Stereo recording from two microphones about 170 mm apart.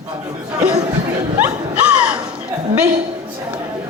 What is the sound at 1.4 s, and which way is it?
Speech, 10° right (ahead or behind).